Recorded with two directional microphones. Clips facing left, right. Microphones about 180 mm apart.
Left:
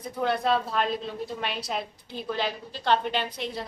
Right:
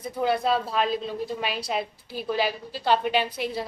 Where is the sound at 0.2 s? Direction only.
5° right (ahead or behind).